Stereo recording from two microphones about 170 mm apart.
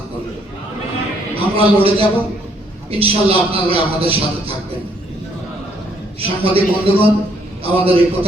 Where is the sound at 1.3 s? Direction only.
35° right (ahead or behind).